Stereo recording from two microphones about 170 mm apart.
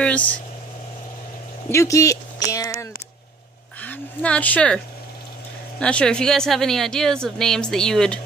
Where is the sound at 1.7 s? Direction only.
15° left (ahead or behind).